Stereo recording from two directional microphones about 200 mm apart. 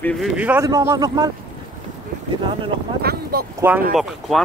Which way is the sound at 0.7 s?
20° right (ahead or behind).